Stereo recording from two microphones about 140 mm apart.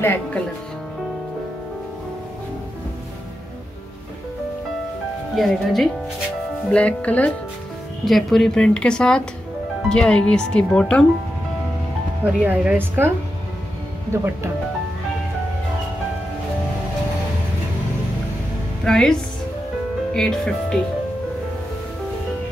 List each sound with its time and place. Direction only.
0.0 s speech: 15° left (ahead or behind)
5.3 s speech: centre (ahead or behind)
12.4 s speech: 10° right (ahead or behind)
14.1 s speech: 20° right (ahead or behind)
18.9 s speech: 5° left (ahead or behind)
20.2 s speech: 5° left (ahead or behind)